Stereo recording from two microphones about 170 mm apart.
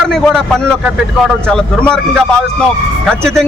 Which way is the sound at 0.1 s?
Centre (ahead or behind).